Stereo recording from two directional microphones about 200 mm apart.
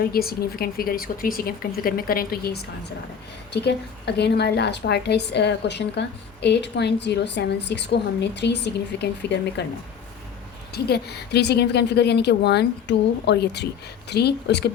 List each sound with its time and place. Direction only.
0.0 s speech: 50° left (ahead or behind)
4.0 s a woman's voice: 55° left (ahead or behind)
10.7 s a woman's voice: 55° left (ahead or behind)